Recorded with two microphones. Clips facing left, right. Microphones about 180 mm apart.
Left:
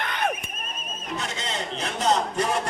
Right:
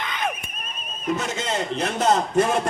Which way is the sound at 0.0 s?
60° left (ahead or behind).